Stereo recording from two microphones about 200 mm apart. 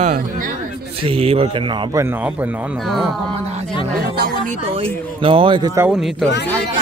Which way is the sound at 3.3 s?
30° right (ahead or behind).